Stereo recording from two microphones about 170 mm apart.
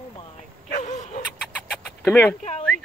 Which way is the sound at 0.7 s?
45° left (ahead or behind).